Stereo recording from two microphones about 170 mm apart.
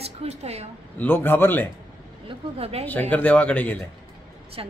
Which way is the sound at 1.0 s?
10° left (ahead or behind).